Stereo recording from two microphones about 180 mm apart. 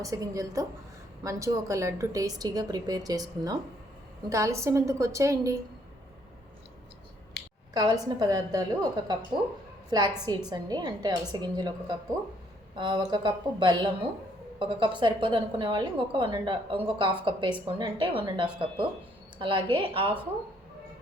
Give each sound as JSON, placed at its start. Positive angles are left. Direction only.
{"t": 0.0, "sound": "a woman's voice", "side_deg": -20}
{"t": 7.3, "sound": "a sound", "side_deg": 70}
{"t": 7.7, "sound": "a woman's voice", "side_deg": -25}
{"t": 12.7, "sound": "a woman's voice", "side_deg": -25}